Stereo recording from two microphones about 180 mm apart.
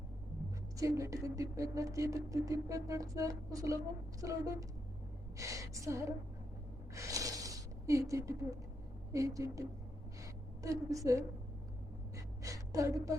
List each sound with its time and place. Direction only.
0.8 s speech: 15° right (ahead or behind)
6.9 s a sound: 15° right (ahead or behind)
9.1 s speech: 15° right (ahead or behind)
12.1 s gasp: 20° right (ahead or behind)